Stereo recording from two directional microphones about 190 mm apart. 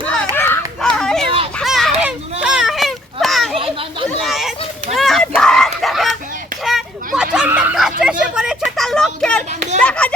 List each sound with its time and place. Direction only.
0.0 s children playing: 10° left (ahead or behind)
4.9 s a sound: centre (ahead or behind)
9.5 s children playing: 35° right (ahead or behind)
9.8 s children playing: 5° left (ahead or behind)